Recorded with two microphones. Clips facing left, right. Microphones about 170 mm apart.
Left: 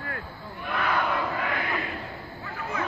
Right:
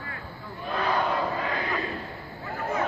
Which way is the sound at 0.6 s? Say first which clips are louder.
Right 1 dB; 30° right (ahead or behind).